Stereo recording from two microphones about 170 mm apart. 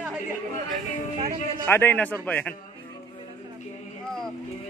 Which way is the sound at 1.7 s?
10° left (ahead or behind).